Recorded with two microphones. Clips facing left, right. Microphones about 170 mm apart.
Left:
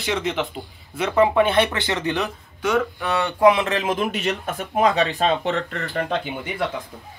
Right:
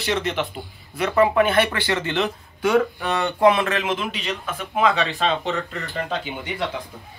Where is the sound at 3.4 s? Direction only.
15° left (ahead or behind).